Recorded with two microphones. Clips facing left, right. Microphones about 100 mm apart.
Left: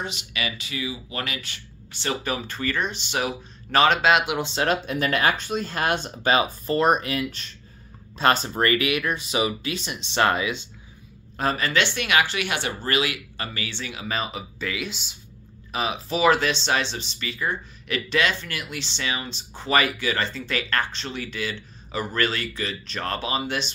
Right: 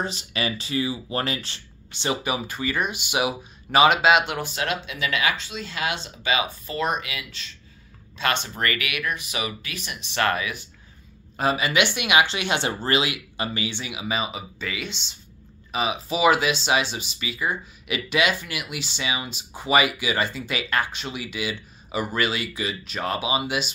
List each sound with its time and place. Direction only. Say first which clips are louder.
0.0 s speech: right 3 dB; 35° right (ahead or behind)
1.9 s speech: right 2 dB; 20° right (ahead or behind); by 4.4 s centre (ahead or behind)
4.4 s speech: left 4 dB; 30° left (ahead or behind)
4.8 s speech: left 3 dB; 45° left (ahead or behind); by 10.7 s 25° left (ahead or behind)
11.3 s speech: right 1 dB; 5° right (ahead or behind)